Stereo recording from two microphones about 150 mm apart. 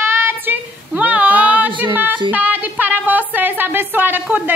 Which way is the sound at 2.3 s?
10° right (ahead or behind).